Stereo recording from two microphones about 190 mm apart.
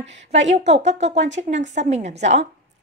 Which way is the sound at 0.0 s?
35° right (ahead or behind).